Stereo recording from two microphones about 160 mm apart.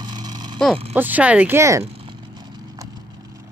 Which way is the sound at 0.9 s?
10° right (ahead or behind).